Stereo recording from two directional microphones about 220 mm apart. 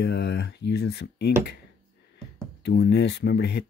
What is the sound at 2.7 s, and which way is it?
Speech, 50° left (ahead or behind).